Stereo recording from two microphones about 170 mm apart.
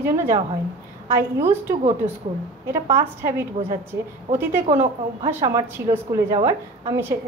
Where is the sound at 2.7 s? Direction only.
15° right (ahead or behind).